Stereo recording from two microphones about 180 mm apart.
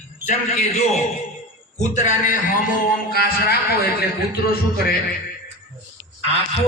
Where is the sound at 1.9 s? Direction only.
40° left (ahead or behind).